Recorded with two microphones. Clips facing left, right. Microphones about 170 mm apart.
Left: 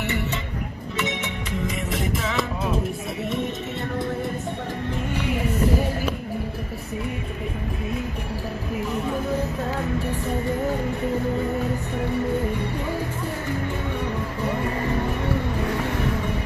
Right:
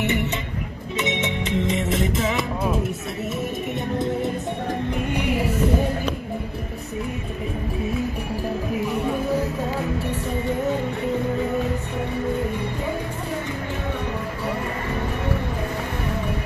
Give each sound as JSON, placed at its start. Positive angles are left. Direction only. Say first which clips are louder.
{"t": 0.0, "sound": "music", "louder": "right 3 dB", "side_deg": -20}